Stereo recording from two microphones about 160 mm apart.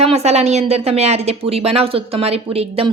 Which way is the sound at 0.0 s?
40° right (ahead or behind).